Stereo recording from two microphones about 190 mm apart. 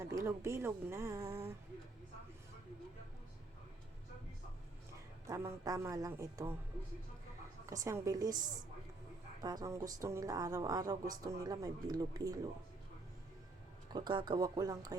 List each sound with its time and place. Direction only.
0.0 s a woman's voice: 15° right (ahead or behind)
5.2 s a woman's voice: 15° right (ahead or behind)
7.7 s a woman's voice: 15° right (ahead or behind)
13.9 s a woman's voice: 25° right (ahead or behind)